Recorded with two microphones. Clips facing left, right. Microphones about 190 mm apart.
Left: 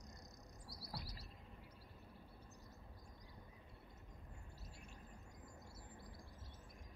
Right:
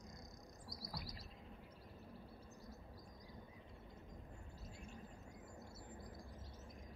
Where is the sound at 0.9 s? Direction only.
30° left (ahead or behind).